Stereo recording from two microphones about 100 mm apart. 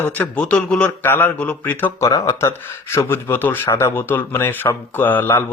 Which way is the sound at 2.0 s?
35° left (ahead or behind).